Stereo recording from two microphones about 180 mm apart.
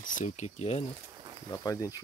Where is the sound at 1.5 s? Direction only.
20° left (ahead or behind).